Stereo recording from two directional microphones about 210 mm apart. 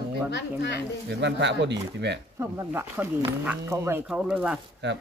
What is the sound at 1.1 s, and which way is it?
Speech, 55° right (ahead or behind).